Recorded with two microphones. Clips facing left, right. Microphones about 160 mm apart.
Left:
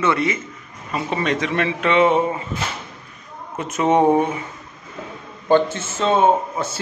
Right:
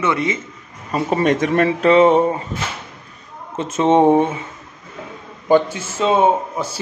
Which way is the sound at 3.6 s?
25° right (ahead or behind).